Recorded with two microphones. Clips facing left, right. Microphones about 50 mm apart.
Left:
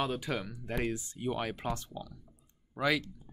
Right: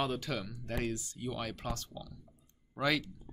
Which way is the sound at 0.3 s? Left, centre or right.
Centre.